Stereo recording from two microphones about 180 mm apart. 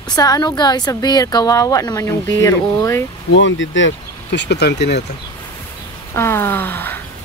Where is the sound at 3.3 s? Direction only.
90° left; by 5.0 s 70° left (ahead or behind).